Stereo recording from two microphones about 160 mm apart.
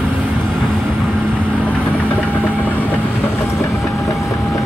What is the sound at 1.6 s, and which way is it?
Vehicle, 10° left (ahead or behind).